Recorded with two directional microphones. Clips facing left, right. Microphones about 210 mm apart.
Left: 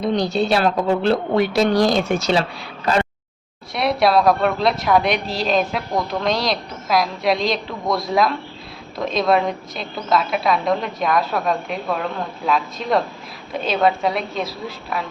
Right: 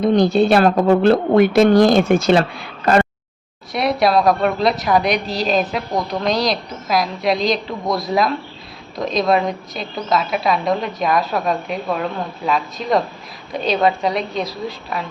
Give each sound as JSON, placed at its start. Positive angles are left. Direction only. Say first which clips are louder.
{"t": 0.0, "sound": "a woman's voice", "louder": "right 6 dB", "side_deg": -50}
{"t": 3.7, "sound": "a woman's voice", "louder": "right 1 dB", "side_deg": 0}